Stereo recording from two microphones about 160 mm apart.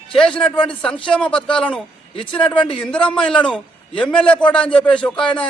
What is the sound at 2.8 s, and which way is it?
A man's voice, 5° left (ahead or behind).